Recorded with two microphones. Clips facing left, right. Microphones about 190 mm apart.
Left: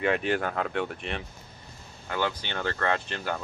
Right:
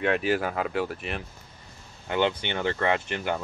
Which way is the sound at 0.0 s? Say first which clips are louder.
Right 1 dB; centre (ahead or behind).